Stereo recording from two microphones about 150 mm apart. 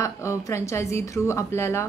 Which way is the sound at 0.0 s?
20° left (ahead or behind).